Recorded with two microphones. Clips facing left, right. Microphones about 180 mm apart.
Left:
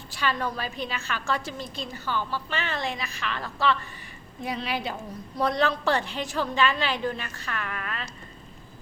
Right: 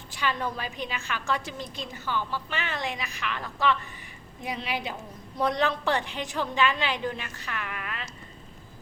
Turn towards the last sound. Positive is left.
turn(degrees=-15)  # may be behind; listen again after turning